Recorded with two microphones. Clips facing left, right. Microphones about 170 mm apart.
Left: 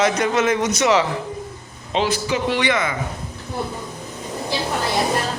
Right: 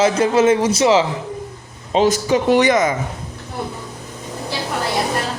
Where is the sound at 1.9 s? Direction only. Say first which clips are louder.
Right 6 dB; 45° right (ahead or behind).